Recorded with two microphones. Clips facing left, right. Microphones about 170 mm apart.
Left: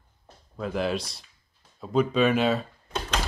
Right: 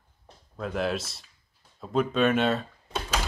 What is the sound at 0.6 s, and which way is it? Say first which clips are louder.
Speech: left 1 dB; centre (ahead or behind).